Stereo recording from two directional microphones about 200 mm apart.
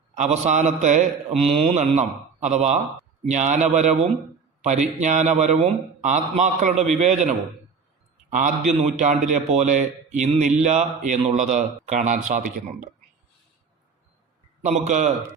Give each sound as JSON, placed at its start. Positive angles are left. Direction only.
{"t": 0.2, "sound": "a man's voice", "side_deg": -35}
{"t": 14.6, "sound": "a man's voice", "side_deg": -35}